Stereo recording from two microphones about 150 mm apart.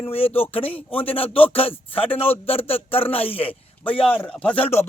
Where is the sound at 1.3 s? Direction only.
40° left (ahead or behind).